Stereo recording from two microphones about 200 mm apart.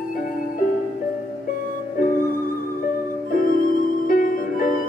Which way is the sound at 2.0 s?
40° left (ahead or behind).